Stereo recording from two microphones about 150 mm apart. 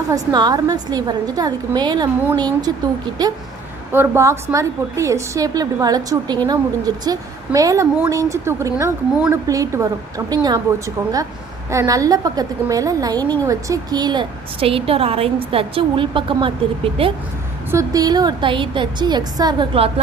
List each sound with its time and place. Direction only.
0.1 s a woman's voice: 25° right (ahead or behind)
3.9 s a woman's voice: 15° right (ahead or behind); by 17.1 s 35° right (ahead or behind)
17.7 s a woman's voice: 20° right (ahead or behind)